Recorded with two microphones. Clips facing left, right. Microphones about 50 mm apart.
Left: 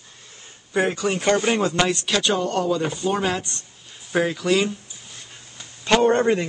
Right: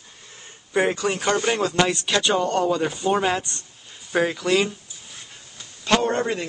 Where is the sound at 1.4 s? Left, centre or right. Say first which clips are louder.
Left 1 dB; centre.